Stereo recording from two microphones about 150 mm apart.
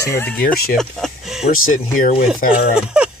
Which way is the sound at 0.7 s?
Centre (ahead or behind).